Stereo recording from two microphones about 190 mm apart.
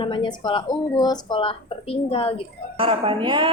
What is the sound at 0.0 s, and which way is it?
Speech, 25° left (ahead or behind).